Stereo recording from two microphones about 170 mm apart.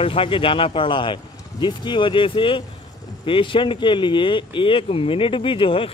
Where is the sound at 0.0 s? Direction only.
35° left (ahead or behind).